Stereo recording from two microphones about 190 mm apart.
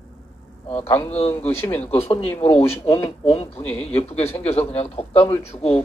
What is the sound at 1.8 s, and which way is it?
Speech, 30° left (ahead or behind).